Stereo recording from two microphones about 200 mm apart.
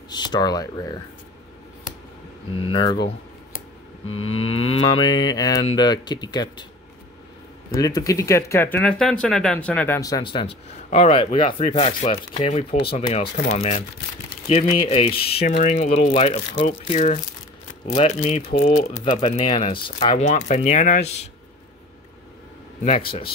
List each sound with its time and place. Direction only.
0.1 s speech: 20° left (ahead or behind)
2.5 s speech: 25° left (ahead or behind)
4.1 s speech: 30° left (ahead or behind)
7.7 s speech: 15° left (ahead or behind)
15.4 s speech: 40° left (ahead or behind)
22.8 s speech: 30° left (ahead or behind)